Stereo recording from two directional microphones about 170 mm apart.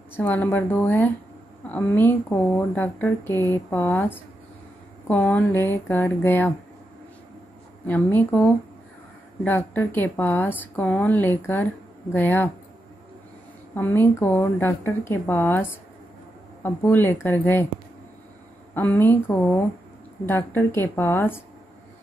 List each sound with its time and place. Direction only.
0.1 s a woman's voice: 10° left (ahead or behind)
7.8 s a woman's voice: 10° left (ahead or behind)
13.7 s a woman's voice: 10° left (ahead or behind)
18.8 s a woman's voice: 10° left (ahead or behind)